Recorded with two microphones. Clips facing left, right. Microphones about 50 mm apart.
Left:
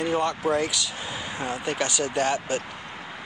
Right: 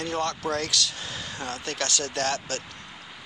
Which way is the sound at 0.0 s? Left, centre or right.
Centre.